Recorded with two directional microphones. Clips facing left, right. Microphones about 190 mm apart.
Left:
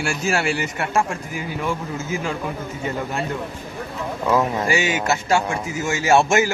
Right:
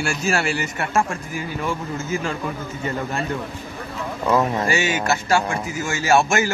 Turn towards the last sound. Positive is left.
turn(degrees=20)  # may be behind; listen again after turning